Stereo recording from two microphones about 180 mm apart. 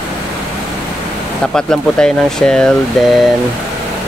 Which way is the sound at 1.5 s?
5° left (ahead or behind).